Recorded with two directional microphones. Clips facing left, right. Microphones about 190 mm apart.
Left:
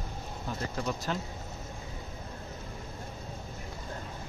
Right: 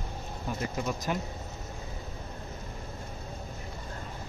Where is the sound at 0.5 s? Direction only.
10° right (ahead or behind).